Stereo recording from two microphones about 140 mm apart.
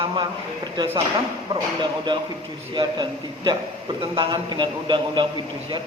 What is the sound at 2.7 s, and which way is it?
A man's voice, 30° right (ahead or behind).